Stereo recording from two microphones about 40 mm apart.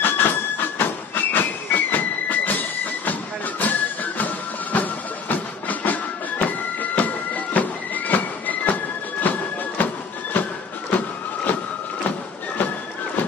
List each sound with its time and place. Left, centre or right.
0.0 s train: left
4.7 s music: left
10.9 s a sound: left